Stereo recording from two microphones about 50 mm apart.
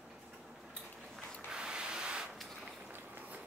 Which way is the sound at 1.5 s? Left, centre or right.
Centre.